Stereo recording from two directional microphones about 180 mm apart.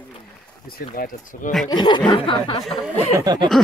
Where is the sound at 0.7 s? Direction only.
55° left (ahead or behind).